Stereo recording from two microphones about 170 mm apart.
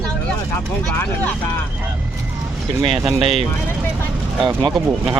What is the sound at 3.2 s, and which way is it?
Speech, 35° right (ahead or behind).